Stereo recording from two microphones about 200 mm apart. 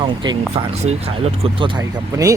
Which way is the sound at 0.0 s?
20° right (ahead or behind).